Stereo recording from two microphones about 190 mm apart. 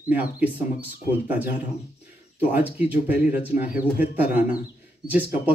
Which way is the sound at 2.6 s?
10° right (ahead or behind).